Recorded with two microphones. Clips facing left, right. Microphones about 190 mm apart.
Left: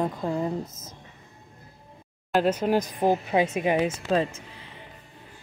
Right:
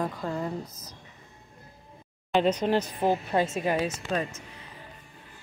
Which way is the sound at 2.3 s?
5° left (ahead or behind).